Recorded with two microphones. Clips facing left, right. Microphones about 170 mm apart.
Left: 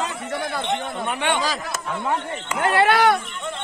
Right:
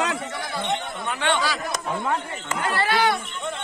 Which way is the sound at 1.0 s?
20° left (ahead or behind).